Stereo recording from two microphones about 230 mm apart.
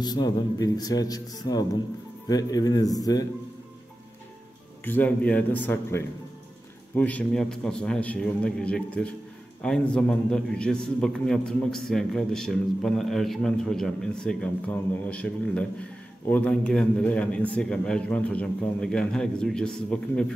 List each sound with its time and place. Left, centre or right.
0.0 s speech: centre
4.8 s a man's voice: centre